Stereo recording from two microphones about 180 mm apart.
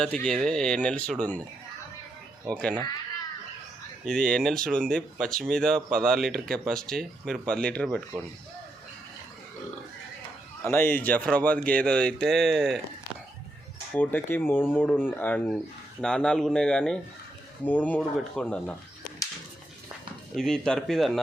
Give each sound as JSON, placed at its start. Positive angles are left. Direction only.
{"t": 0.0, "sound": "speech", "side_deg": 5}
{"t": 2.5, "sound": "speech", "side_deg": 5}
{"t": 4.0, "sound": "speech", "side_deg": 5}
{"t": 10.6, "sound": "speech", "side_deg": 15}
{"t": 13.9, "sound": "speech", "side_deg": 10}
{"t": 20.3, "sound": "speech", "side_deg": 5}